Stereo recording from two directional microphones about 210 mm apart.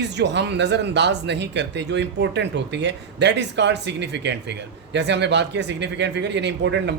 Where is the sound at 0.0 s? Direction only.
55° right (ahead or behind).